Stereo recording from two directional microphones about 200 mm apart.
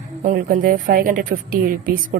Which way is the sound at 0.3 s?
40° right (ahead or behind).